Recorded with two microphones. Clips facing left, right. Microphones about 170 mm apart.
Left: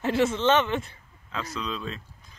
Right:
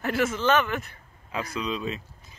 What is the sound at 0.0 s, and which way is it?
Speech, 25° left (ahead or behind).